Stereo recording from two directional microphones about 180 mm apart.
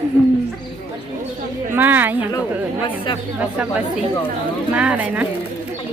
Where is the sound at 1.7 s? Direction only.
10° right (ahead or behind).